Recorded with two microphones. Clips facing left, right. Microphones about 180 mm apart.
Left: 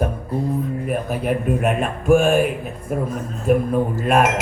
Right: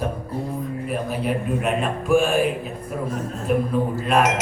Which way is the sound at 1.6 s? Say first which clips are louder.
Left 3 dB; 50° left (ahead or behind).